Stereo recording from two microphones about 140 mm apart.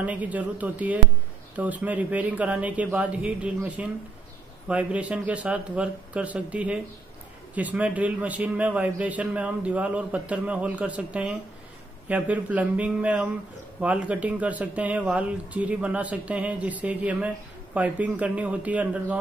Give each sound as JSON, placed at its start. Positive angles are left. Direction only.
{"t": 0.0, "sound": "a man's voice", "side_deg": -10}